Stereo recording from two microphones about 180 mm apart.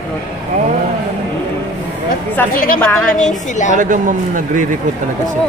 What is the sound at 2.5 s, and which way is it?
Speech, 50° left (ahead or behind).